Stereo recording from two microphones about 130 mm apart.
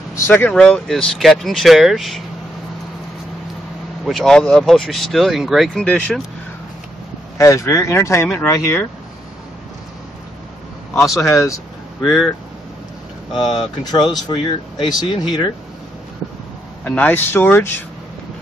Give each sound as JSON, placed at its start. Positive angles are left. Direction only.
{"t": 0.1, "sound": "speech", "side_deg": 20}
{"t": 4.0, "sound": "speech", "side_deg": 0}
{"t": 5.9, "sound": "speech", "side_deg": 10}
{"t": 7.3, "sound": "speech", "side_deg": 20}
{"t": 8.3, "sound": "speech", "side_deg": 5}
{"t": 11.0, "sound": "speech", "side_deg": 0}
{"t": 11.3, "sound": "speech", "side_deg": 25}
{"t": 12.0, "sound": "speech", "side_deg": 0}
{"t": 13.5, "sound": "speech", "side_deg": 35}
{"t": 16.8, "sound": "speech", "side_deg": 10}